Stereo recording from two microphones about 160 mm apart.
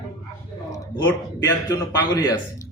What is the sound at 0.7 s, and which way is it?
A man's voice, 20° left (ahead or behind).